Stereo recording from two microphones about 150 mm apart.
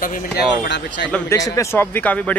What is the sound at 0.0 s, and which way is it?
Speech, 65° left (ahead or behind).